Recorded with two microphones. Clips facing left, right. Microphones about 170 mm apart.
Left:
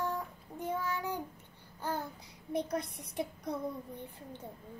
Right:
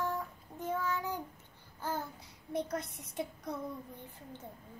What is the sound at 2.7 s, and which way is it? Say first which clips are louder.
Child singing: left 2 dB; 15° left (ahead or behind).